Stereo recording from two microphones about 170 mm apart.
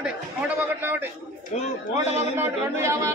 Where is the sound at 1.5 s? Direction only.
45° left (ahead or behind).